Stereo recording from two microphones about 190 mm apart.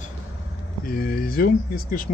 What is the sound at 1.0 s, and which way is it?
Speech, 50° left (ahead or behind).